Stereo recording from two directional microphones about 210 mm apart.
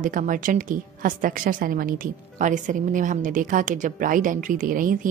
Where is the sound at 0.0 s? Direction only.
40° right (ahead or behind).